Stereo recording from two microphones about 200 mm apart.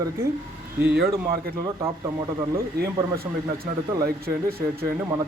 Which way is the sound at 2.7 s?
50° right (ahead or behind).